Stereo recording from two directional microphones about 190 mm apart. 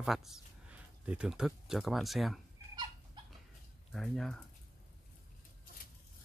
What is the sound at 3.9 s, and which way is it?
Speech, centre (ahead or behind).